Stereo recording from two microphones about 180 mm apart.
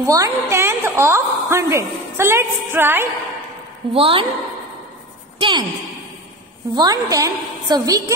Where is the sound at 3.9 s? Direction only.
30° right (ahead or behind).